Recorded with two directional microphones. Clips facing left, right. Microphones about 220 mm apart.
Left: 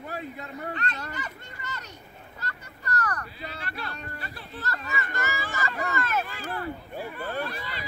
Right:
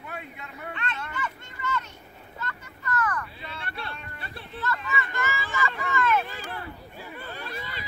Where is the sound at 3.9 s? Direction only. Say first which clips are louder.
Left 3 dB; 40° left (ahead or behind).